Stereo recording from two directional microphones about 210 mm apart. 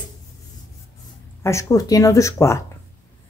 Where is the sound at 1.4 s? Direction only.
15° left (ahead or behind).